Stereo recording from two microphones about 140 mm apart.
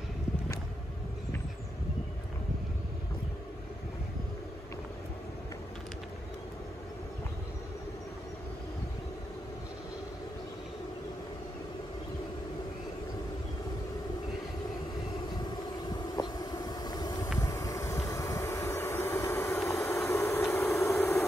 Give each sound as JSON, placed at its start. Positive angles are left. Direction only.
{"t": 15.9, "sound": "vehicle", "side_deg": 30}